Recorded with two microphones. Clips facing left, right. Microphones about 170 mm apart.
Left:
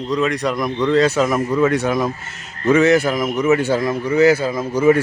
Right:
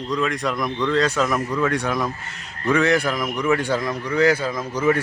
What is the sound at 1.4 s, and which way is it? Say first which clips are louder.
Speech: left 6 dB; 20° left (ahead or behind).